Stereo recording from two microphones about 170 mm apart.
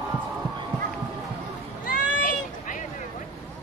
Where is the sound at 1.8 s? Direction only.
50° left (ahead or behind).